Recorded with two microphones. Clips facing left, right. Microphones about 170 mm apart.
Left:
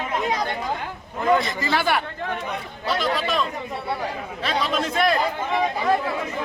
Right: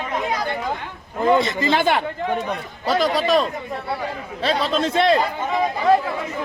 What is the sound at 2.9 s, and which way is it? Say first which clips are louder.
Speech: right 5 dB; 40° right (ahead or behind).